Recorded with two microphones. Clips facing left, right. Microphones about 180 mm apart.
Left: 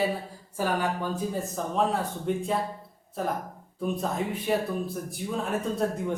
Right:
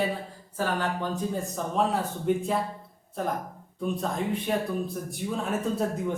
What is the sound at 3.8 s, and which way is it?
Speech, 5° left (ahead or behind).